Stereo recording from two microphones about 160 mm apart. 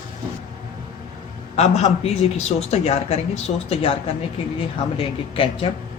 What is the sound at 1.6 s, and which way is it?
A man's voice, 45° left (ahead or behind).